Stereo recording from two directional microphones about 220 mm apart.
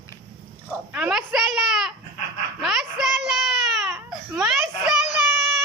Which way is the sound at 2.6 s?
Centre (ahead or behind).